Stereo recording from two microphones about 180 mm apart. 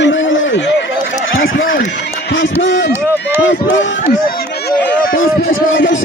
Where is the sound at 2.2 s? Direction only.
90° left.